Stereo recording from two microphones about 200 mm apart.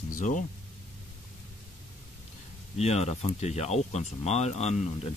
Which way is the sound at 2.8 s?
30° left (ahead or behind).